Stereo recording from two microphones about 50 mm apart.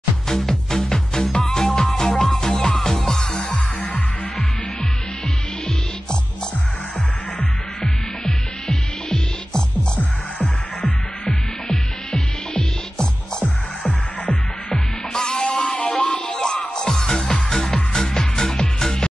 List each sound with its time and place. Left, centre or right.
0.3 s music: centre
3.5 s music: left
7.3 s music: centre
11.7 s music: centre
13.8 s music: left
14.7 s music: centre
15.7 s music: left
16.4 s music: centre